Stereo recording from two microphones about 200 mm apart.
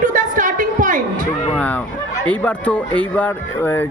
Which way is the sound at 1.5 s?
10° left (ahead or behind).